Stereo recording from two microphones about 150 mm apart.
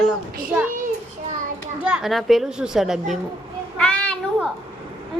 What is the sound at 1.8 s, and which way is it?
A child's voice, 5° right (ahead or behind).